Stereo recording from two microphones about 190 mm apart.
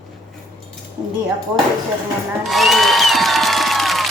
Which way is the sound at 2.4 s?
Centre (ahead or behind).